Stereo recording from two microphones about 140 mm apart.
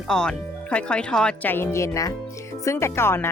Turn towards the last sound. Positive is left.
turn(degrees=15)  # may be behind; listen again after turning